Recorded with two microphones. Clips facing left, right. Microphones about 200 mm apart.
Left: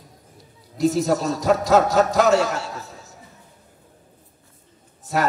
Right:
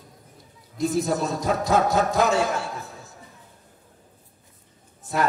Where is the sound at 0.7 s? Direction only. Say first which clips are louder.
Left 4 dB; 55° right (ahead or behind).